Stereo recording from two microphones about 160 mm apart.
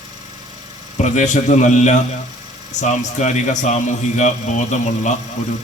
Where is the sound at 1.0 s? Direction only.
50° left (ahead or behind).